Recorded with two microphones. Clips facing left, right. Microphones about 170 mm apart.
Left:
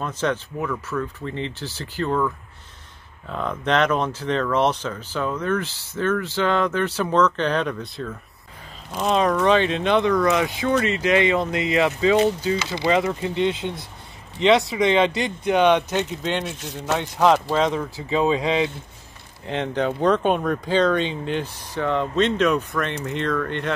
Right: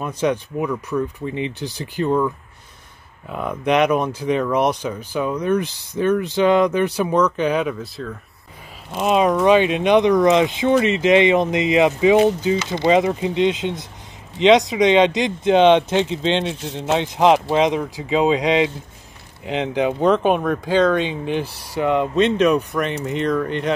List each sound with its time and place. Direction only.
0.0 s speech: 10° right (ahead or behind)
9.1 s speech: 10° right (ahead or behind)